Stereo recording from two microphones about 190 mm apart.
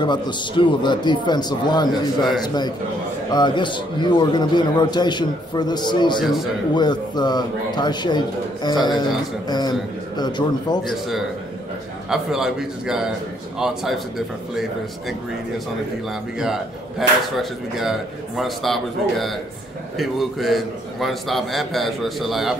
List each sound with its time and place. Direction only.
0.0 s a man's voice: 25° left (ahead or behind)
6.2 s a man's voice: centre (ahead or behind)
6.7 s a man's voice: 20° left (ahead or behind)
10.8 s a man's voice: centre (ahead or behind)